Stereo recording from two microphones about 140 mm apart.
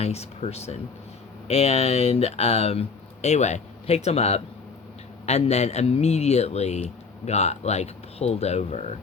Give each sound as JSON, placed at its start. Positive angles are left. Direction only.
{"t": 0.0, "sound": "speech", "side_deg": 50}